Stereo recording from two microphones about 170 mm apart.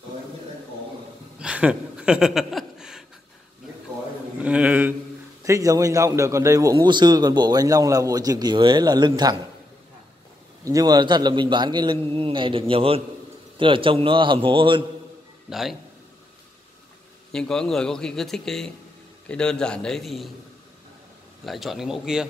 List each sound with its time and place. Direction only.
1.4 s a sound: 5° right (ahead or behind)
4.4 s a man's voice: 5° right (ahead or behind)
5.4 s a man's voice: 20° right (ahead or behind)
10.6 s a man's voice: 20° right (ahead or behind)
17.3 s a man's voice: 5° left (ahead or behind)
21.5 s a man's voice: centre (ahead or behind)